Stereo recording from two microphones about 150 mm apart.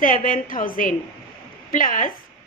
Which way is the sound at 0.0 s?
65° left (ahead or behind).